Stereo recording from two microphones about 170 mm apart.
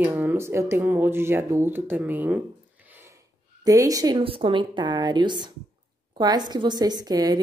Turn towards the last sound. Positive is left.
turn(degrees=-20)  # may be behind; listen again after turning